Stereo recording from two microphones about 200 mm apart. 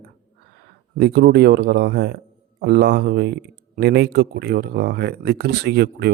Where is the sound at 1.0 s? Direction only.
55° right (ahead or behind).